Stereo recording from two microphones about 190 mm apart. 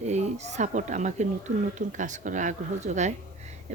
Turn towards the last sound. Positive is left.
turn(degrees=-40)  # may be behind; listen again after turning